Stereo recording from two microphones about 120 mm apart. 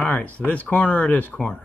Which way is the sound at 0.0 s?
15° left (ahead or behind).